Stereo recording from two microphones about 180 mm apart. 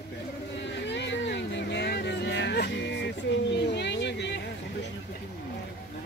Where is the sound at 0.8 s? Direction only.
80° left.